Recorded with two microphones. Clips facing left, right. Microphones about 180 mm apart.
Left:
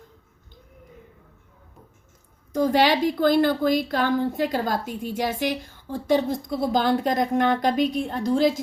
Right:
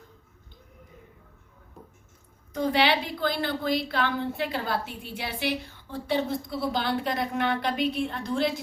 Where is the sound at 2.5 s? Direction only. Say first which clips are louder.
Left 5 dB; 40° left (ahead or behind).